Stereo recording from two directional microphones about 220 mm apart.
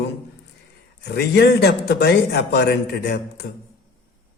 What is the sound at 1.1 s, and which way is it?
Speech, 50° left (ahead or behind).